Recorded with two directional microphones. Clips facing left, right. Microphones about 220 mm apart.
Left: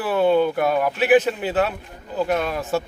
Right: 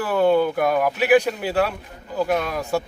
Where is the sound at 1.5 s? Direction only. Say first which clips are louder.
Even; 5° left (ahead or behind).